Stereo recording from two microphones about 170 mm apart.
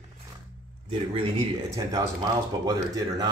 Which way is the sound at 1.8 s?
20° right (ahead or behind).